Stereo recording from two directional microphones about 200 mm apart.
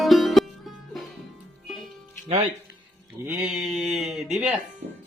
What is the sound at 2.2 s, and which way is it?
Speech, 30° right (ahead or behind).